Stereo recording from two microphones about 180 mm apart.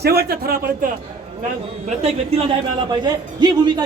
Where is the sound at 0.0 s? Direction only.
60° right (ahead or behind).